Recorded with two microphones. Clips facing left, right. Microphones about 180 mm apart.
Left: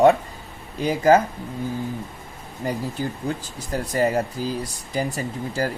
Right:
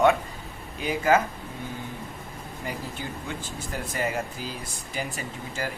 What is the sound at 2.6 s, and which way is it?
Speech, 40° left (ahead or behind).